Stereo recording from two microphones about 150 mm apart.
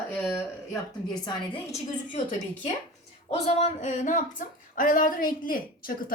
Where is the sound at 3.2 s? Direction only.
45° left (ahead or behind).